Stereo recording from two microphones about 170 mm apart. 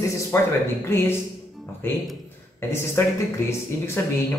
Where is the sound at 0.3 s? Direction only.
15° left (ahead or behind).